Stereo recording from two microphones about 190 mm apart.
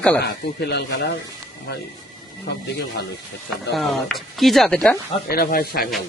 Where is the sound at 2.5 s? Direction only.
60° left (ahead or behind).